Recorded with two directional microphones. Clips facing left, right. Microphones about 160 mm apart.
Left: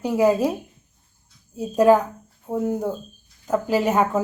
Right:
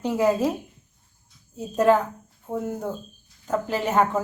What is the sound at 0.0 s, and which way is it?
Speech, 10° left (ahead or behind).